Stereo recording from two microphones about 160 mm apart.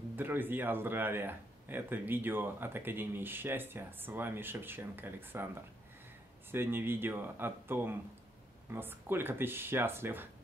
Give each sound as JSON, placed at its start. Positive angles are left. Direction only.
{"t": 0.1, "sound": "speech", "side_deg": -10}